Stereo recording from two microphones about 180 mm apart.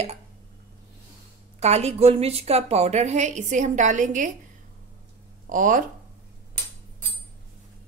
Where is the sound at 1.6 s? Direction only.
35° right (ahead or behind).